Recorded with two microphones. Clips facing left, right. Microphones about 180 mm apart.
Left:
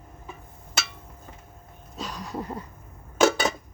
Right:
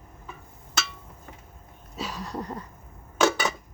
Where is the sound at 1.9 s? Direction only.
5° right (ahead or behind).